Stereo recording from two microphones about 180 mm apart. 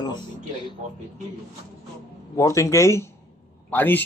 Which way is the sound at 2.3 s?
15° left (ahead or behind).